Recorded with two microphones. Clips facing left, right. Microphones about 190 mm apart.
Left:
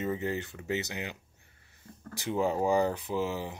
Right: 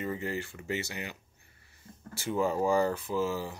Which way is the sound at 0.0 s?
20° left (ahead or behind).